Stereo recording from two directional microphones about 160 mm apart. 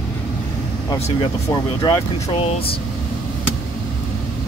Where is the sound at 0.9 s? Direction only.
40° left (ahead or behind).